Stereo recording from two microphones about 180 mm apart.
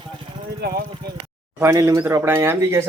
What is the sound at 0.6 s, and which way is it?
Speech, 60° right (ahead or behind).